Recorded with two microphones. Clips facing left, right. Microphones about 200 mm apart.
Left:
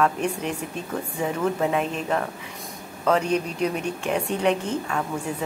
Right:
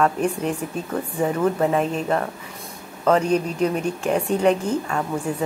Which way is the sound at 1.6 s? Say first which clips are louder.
Right 3 dB; 40° right (ahead or behind).